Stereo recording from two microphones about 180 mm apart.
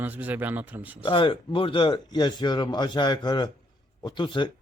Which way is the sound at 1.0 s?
30° left (ahead or behind).